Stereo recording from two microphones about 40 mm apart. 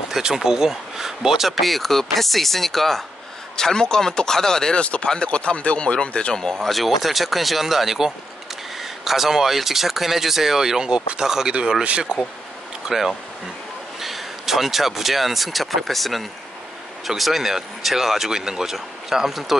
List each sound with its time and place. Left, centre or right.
0.1 s speech: centre
3.5 s speech: centre
4.7 s speech: left
6.3 s speech: centre
6.7 s speech: centre
12.8 s speech: centre